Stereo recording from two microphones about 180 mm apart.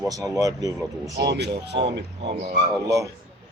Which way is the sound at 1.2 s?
70° right (ahead or behind).